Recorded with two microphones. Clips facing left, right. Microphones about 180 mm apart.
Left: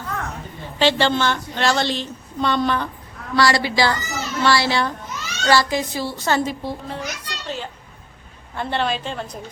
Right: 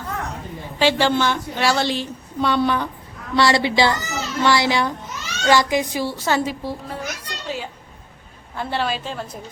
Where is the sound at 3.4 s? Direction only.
25° right (ahead or behind); by 6.9 s 5° right (ahead or behind).